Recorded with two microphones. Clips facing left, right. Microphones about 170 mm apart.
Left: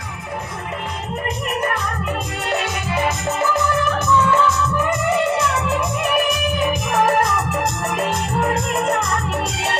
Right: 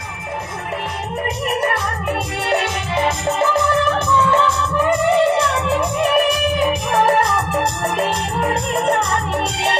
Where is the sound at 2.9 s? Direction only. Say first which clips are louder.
Right 3 dB; 30° right (ahead or behind).